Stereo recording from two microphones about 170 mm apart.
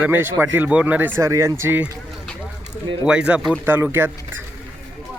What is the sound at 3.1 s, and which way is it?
A man's voice, 5° right (ahead or behind).